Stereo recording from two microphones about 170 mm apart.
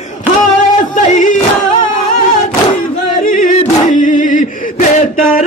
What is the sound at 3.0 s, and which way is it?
Singing, 50° left (ahead or behind).